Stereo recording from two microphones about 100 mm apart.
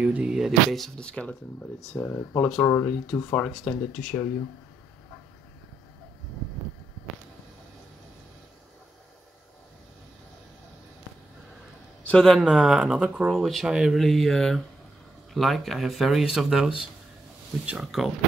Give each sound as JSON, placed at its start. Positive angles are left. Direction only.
{"t": 0.0, "sound": "speech", "side_deg": -10}
{"t": 2.0, "sound": "speech", "side_deg": 20}
{"t": 3.5, "sound": "speech", "side_deg": 0}
{"t": 12.1, "sound": "speech", "side_deg": 5}